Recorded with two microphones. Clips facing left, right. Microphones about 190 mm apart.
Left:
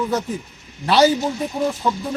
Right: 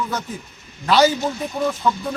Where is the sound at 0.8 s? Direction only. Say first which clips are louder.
Left 1 dB; 30° left (ahead or behind).